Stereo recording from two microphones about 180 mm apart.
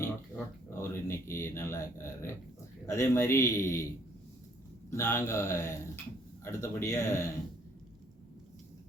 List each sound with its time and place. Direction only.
0.7 s a man's voice: 15° left (ahead or behind)
4.9 s a man's voice: 15° left (ahead or behind)